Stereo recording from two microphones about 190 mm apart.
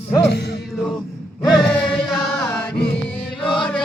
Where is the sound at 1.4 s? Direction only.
5° left (ahead or behind).